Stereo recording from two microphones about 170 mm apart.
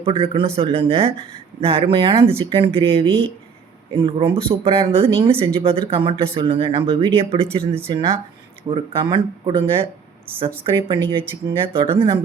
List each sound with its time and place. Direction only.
0.0 s speech: 35° right (ahead or behind)